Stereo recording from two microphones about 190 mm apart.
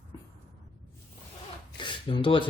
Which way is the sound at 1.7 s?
25° left (ahead or behind).